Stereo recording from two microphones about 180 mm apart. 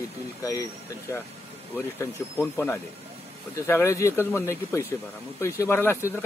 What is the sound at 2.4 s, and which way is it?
Speech, 15° left (ahead or behind).